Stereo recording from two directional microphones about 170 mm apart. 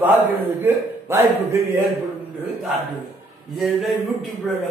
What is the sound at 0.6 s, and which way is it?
A man's voice, 15° right (ahead or behind).